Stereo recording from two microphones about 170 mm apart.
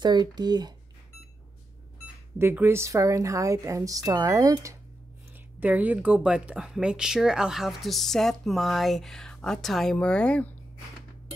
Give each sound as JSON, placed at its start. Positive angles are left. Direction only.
{"t": 0.0, "sound": "a woman's voice", "side_deg": -25}
{"t": 2.3, "sound": "a woman's voice", "side_deg": -15}
{"t": 5.6, "sound": "speech", "side_deg": -10}